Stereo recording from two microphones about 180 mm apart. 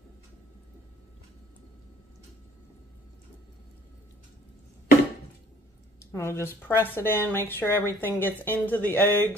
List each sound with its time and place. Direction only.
6.1 s speech: 15° left (ahead or behind)